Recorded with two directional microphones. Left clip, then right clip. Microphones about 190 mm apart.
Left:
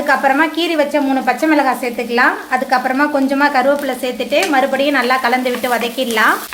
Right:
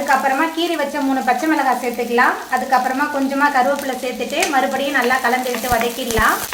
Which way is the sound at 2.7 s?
45° left (ahead or behind).